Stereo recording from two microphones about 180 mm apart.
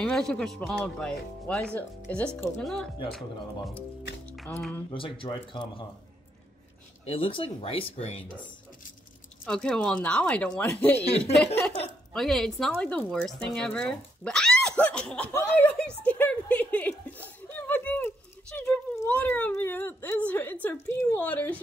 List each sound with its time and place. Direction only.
0.0 s speech: 5° left (ahead or behind)
4.3 s music: 5° left (ahead or behind)
4.9 s speech: 30° left (ahead or behind)
7.1 s speech: 30° left (ahead or behind)
9.5 s a woman's voice: 5° left (ahead or behind)
16.0 s a sound: 5° left (ahead or behind)
18.6 s a woman's voice: 10° left (ahead or behind)